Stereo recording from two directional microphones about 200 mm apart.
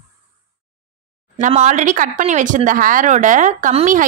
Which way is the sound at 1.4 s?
40° right (ahead or behind).